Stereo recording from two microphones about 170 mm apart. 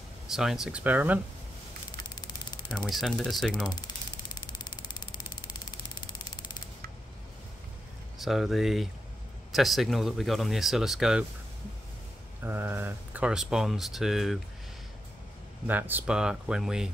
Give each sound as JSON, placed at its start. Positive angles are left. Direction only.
{"t": 0.3, "sound": "speech", "side_deg": 0}
{"t": 1.9, "sound": "a sound", "side_deg": 25}
{"t": 2.9, "sound": "speech", "side_deg": 0}
{"t": 3.5, "sound": "a sound", "side_deg": 25}
{"t": 8.2, "sound": "speech", "side_deg": 0}
{"t": 12.4, "sound": "speech", "side_deg": -10}
{"t": 15.6, "sound": "speech", "side_deg": -10}